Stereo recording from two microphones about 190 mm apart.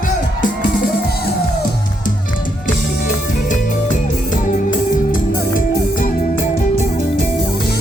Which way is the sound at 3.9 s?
45° left (ahead or behind).